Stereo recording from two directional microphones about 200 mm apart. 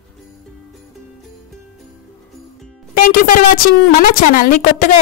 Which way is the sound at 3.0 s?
45° left (ahead or behind).